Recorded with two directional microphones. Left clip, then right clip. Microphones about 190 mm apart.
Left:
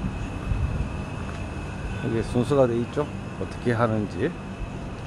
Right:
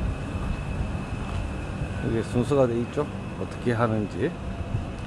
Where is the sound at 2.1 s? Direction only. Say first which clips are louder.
Left 2 dB; 10° left (ahead or behind).